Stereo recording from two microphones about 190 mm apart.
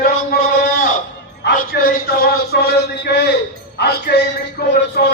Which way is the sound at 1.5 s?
55° left (ahead or behind).